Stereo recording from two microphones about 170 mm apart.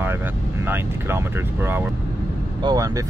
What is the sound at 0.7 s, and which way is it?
Speech, 15° right (ahead or behind).